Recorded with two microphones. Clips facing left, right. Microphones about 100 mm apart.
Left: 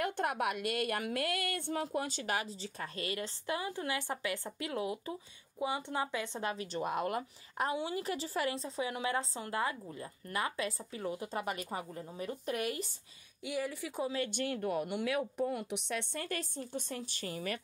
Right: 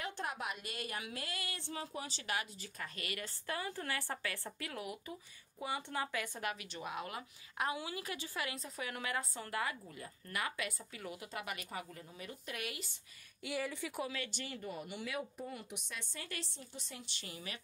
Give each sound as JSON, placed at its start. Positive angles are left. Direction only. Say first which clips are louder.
{"t": 0.0, "sound": "a woman's voice", "louder": "left 8 dB", "side_deg": 60}
{"t": 7.7, "sound": "a woman's voice", "louder": "left 7 dB", "side_deg": 30}
{"t": 13.5, "sound": "speech", "louder": "left 3 dB", "side_deg": 15}
{"t": 14.0, "sound": "a woman's voice", "louder": "left 7 dB", "side_deg": 35}
{"t": 14.3, "sound": "speech", "louder": "left 10 dB", "side_deg": 55}